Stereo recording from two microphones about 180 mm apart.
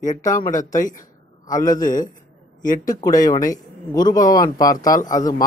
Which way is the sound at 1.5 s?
20° left (ahead or behind).